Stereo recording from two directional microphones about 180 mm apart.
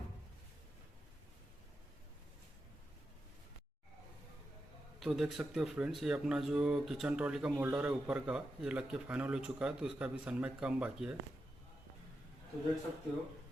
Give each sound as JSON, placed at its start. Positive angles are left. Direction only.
{"t": 4.9, "sound": "speech", "side_deg": 0}